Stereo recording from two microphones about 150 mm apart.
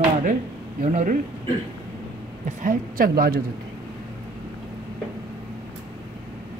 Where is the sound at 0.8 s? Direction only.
55° right (ahead or behind).